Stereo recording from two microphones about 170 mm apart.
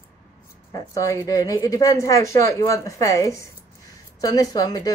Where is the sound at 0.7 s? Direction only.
20° left (ahead or behind).